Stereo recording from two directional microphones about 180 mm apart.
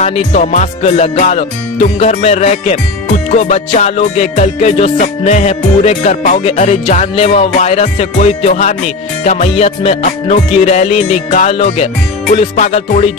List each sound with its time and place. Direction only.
0.0 s music: 40° left (ahead or behind)